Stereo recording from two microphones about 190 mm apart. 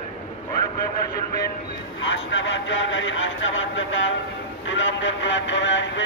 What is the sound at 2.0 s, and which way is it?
A man's voice, 80° left.